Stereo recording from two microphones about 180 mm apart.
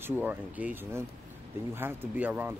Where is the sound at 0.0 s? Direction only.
10° right (ahead or behind).